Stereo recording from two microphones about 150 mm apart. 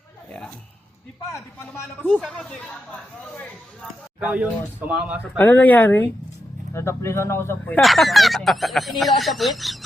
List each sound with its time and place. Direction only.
1.3 s speech: 15° left (ahead or behind)
4.2 s speech: 10° right (ahead or behind)
5.4 s speech: 10° left (ahead or behind)